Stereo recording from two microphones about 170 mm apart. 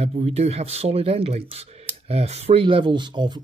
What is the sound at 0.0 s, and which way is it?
Speech, 40° right (ahead or behind).